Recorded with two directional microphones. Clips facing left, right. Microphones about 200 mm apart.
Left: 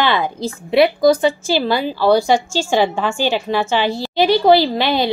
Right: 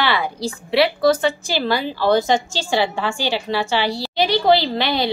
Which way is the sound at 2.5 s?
15° left (ahead or behind).